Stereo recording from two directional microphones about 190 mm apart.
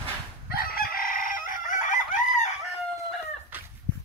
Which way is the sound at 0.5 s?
50° left (ahead or behind).